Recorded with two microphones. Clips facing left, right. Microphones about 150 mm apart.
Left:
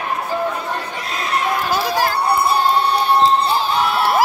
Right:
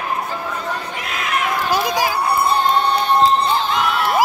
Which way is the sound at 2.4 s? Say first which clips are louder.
Even; 10° left (ahead or behind).